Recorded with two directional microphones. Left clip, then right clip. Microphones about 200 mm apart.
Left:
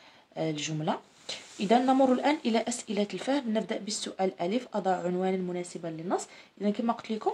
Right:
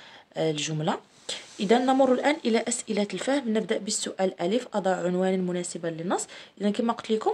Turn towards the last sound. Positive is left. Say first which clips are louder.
# right 5 dB
turn(degrees=-35)  # may be behind; listen again after turning